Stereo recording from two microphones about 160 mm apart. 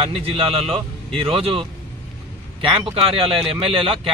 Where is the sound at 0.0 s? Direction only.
40° right (ahead or behind).